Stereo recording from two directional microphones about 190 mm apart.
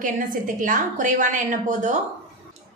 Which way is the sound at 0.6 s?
45° right (ahead or behind).